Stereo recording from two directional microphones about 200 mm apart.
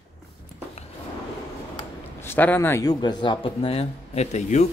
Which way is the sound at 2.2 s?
10° left (ahead or behind).